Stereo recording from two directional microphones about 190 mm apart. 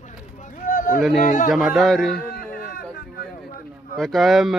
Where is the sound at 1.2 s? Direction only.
45° left (ahead or behind).